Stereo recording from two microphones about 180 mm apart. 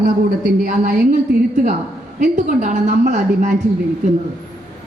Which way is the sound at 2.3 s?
45° right (ahead or behind).